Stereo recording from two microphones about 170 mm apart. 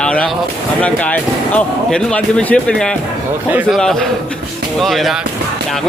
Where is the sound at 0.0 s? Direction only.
5° left (ahead or behind).